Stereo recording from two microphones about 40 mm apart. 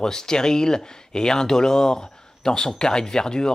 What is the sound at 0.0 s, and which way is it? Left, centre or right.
Speech, centre.